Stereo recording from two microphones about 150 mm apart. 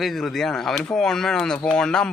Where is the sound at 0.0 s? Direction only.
Centre (ahead or behind).